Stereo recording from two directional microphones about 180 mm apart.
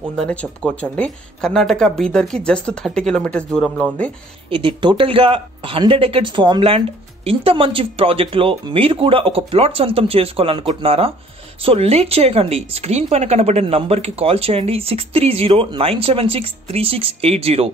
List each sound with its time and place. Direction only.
0.1 s speech: 5° left (ahead or behind)
4.5 s a woman's voice: 30° right (ahead or behind)